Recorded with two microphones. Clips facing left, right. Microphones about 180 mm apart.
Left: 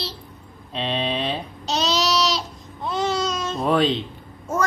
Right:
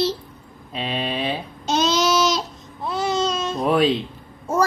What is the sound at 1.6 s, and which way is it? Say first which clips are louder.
Babbling: right 3 dB; 50° right (ahead or behind).